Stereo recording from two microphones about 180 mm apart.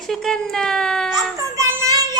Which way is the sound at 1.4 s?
15° right (ahead or behind).